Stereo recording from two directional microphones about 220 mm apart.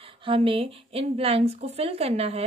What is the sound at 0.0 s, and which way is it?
A woman's voice, 25° right (ahead or behind).